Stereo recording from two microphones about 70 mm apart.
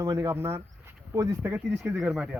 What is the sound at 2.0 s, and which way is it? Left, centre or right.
Speech, centre.